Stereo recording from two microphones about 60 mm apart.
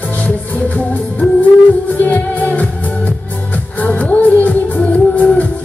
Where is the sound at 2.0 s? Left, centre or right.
Left.